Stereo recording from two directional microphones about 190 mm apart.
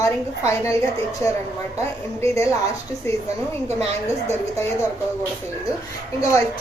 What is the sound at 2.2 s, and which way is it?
Speech, 15° left (ahead or behind).